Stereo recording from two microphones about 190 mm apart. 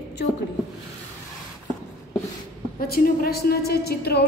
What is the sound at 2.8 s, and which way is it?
A woman's voice, 50° left (ahead or behind).